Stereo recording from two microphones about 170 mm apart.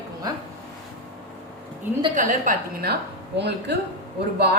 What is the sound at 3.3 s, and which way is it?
Speech, 80° right.